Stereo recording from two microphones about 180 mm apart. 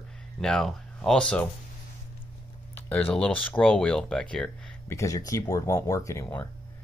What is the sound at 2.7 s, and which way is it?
Speech, 10° left (ahead or behind).